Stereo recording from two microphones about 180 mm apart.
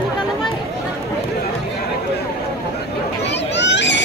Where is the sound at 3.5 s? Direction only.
75° left (ahead or behind).